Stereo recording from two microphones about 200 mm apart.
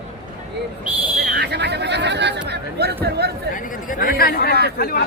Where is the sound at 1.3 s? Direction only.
55° right (ahead or behind).